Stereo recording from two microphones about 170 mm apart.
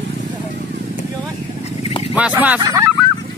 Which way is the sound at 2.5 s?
20° right (ahead or behind).